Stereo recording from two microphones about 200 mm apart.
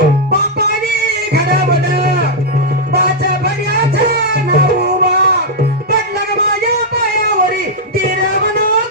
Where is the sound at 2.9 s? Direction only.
55° right (ahead or behind).